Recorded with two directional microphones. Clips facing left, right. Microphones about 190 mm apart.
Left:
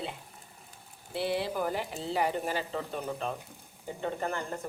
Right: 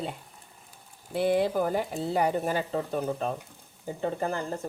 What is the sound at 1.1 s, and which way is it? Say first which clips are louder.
Speech: right 7 dB; 50° right (ahead or behind).